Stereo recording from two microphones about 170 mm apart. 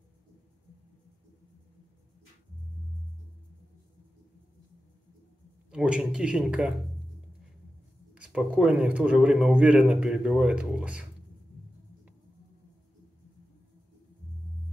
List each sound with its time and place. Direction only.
5.7 s speech: 5° right (ahead or behind)
8.1 s speech: 5° right (ahead or behind)